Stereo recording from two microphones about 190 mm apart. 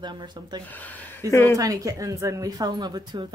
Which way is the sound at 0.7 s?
10° left (ahead or behind).